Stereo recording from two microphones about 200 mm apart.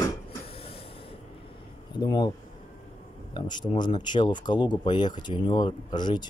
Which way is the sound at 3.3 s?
20° left (ahead or behind).